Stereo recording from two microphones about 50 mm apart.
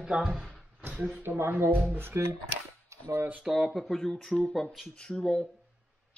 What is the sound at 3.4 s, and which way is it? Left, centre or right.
Speech, centre.